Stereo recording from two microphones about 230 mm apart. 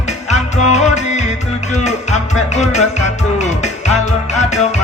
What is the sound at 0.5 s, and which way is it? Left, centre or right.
Music, left.